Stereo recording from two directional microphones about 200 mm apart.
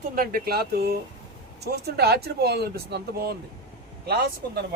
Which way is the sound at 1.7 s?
55° right (ahead or behind).